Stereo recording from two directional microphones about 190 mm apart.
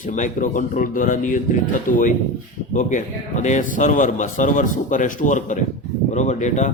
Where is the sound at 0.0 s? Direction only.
45° left (ahead or behind).